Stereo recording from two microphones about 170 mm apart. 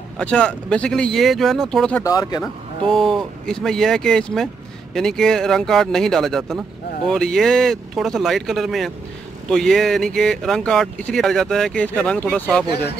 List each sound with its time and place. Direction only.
0.2 s speech: 5° left (ahead or behind)
2.0 s speech: 25° left (ahead or behind)
2.4 s speech: centre (ahead or behind)